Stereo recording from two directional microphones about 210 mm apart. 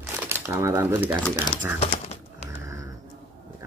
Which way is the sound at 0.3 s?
10° right (ahead or behind).